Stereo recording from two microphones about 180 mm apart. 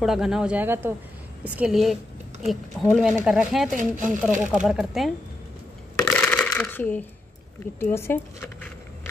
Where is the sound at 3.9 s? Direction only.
45° right (ahead or behind).